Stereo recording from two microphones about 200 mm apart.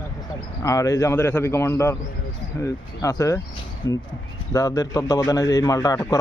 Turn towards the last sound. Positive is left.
turn(degrees=15)  # may be behind; listen again after turning